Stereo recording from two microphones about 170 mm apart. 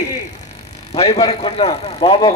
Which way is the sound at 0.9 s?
35° left (ahead or behind).